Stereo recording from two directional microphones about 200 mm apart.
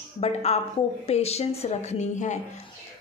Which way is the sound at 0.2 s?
30° left (ahead or behind).